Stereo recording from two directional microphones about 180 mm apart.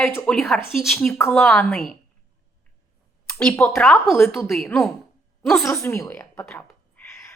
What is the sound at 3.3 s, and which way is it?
A woman's voice, 5° left (ahead or behind).